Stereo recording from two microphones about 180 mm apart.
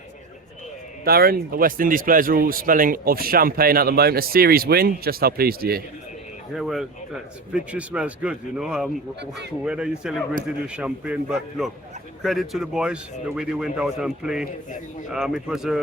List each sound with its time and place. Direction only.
1.0 s speech: 55° right (ahead or behind)
6.5 s a man's voice: centre (ahead or behind)